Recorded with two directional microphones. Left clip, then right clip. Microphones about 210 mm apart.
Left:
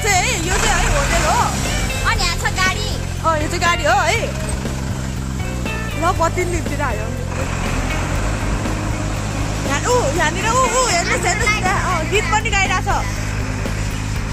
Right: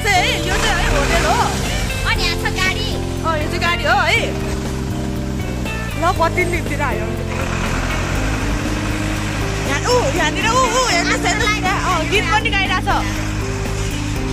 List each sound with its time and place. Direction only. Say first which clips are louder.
0.0 s a sound: right 2 dB; 10° left (ahead or behind)
2.0 s music: even; 20° left (ahead or behind)
9.7 s speech: even; 5° right (ahead or behind)
12.4 s a woman's voice: even; 10° right (ahead or behind)